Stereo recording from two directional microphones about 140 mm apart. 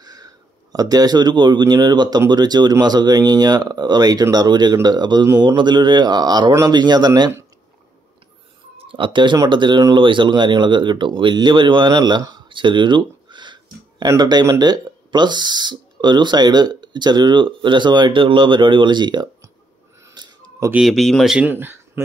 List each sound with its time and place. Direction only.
0.0 s a sound: 25° right (ahead or behind)
0.7 s speech: 25° right (ahead or behind)
8.7 s speech: 35° right (ahead or behind)
20.2 s a sound: 30° right (ahead or behind)
20.7 s speech: centre (ahead or behind)
21.5 s speech: 15° right (ahead or behind)